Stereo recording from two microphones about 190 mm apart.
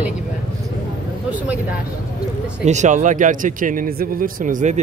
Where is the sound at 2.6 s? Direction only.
40° right (ahead or behind).